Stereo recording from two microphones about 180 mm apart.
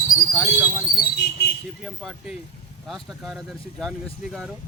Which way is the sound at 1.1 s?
65° left (ahead or behind).